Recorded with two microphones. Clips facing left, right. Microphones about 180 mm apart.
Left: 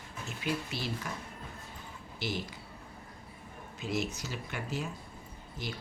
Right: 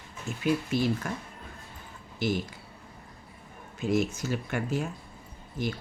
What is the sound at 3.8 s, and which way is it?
Speech, 50° right (ahead or behind).